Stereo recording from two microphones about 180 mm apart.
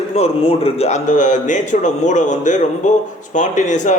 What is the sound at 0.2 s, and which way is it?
A man's voice, 35° left (ahead or behind).